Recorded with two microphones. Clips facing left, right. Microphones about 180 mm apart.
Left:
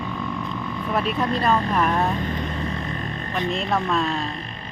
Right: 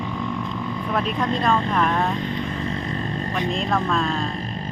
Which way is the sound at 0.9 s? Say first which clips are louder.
Left 1 dB; 5° left (ahead or behind).